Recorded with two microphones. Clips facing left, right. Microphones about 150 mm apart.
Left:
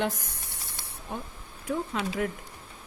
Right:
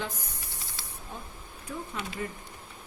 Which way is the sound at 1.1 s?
70° left (ahead or behind).